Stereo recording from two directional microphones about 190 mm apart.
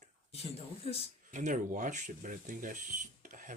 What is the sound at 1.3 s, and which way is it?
Speech, 40° right (ahead or behind).